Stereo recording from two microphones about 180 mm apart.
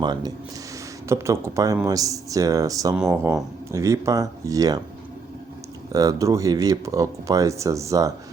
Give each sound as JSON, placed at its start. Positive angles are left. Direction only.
{"t": 0.0, "sound": "speech", "side_deg": -25}
{"t": 5.9, "sound": "speech", "side_deg": -20}